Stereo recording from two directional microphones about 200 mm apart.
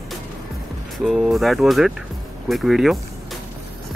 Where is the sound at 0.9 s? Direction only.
Centre (ahead or behind).